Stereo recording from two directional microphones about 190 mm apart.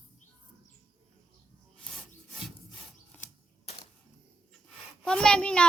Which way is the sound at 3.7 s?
30° left (ahead or behind).